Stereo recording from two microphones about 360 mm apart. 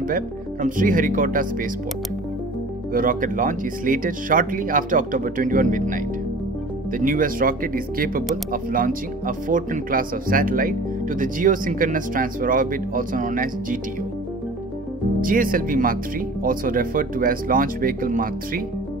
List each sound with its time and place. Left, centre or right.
0.0 s speech: right
2.9 s speech: right
15.1 s speech: right